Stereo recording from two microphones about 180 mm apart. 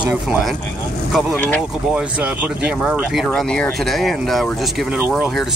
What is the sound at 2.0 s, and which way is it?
Speech, 5° right (ahead or behind).